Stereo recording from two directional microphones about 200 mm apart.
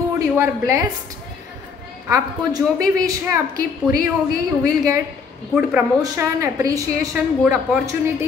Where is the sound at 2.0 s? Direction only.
15° right (ahead or behind).